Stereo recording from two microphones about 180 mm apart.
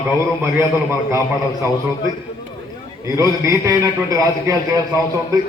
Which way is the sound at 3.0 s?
15° right (ahead or behind).